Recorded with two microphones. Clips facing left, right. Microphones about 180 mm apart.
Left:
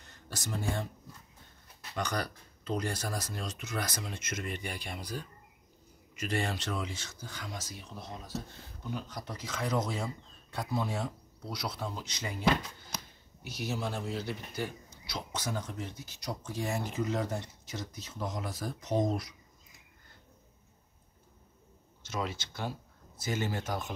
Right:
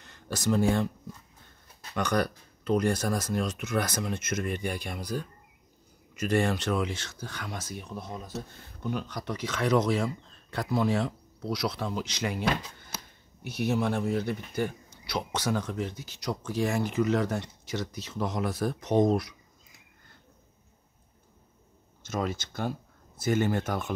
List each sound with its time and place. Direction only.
0.0 s speech: 75° right (ahead or behind)
2.0 s speech: 55° right (ahead or behind)
8.8 s speech: 70° right (ahead or behind)
13.4 s speech: 60° right (ahead or behind)
22.0 s speech: 50° right (ahead or behind)